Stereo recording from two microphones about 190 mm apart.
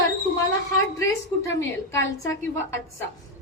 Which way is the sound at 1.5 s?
15° left (ahead or behind).